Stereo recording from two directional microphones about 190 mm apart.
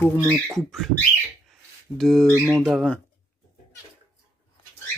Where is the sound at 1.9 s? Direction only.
Centre (ahead or behind).